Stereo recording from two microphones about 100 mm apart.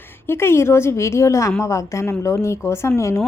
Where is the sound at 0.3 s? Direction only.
25° left (ahead or behind).